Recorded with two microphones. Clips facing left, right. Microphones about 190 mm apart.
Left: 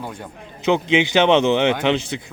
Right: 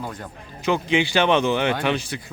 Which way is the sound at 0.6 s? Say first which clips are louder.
Left 3 dB; 20° left (ahead or behind).